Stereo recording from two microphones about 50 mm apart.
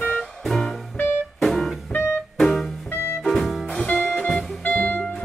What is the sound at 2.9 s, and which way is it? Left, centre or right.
Music, left.